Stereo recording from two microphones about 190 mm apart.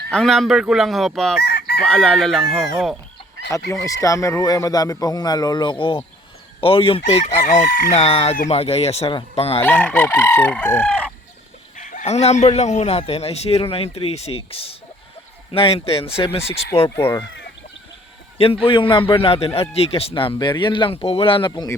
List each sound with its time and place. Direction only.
0.1 s speech: centre (ahead or behind)
1.5 s chicken: 55° left (ahead or behind)
1.9 s speech: 5° left (ahead or behind)
3.7 s speech: 15° left (ahead or behind)
9.6 s chicken: 10° left (ahead or behind)
11.8 s speech: 45° left (ahead or behind)
16.9 s chicken: 15° left (ahead or behind)
18.3 s speech: 30° left (ahead or behind)